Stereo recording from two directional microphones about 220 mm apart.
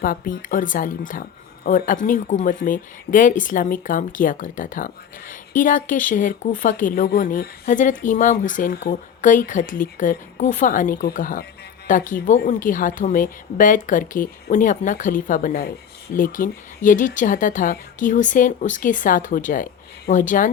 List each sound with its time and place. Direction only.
0.0 s a woman's voice: 40° left (ahead or behind)